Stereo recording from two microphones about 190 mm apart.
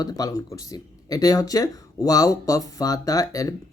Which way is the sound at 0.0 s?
20° left (ahead or behind).